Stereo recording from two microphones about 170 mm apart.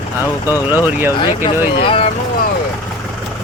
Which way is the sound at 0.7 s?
10° right (ahead or behind).